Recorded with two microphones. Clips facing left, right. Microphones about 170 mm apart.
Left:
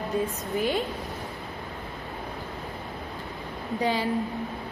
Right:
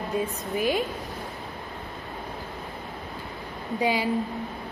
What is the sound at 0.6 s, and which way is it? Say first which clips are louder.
Speech: right 1 dB; 15° right (ahead or behind).